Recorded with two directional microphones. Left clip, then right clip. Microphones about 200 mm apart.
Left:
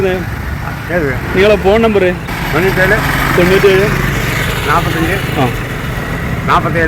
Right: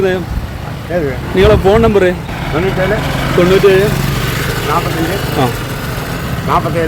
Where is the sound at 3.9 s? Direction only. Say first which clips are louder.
Left 2 dB; 55° right (ahead or behind).